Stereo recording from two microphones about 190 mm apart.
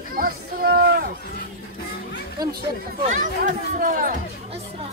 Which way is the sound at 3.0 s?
40° right (ahead or behind).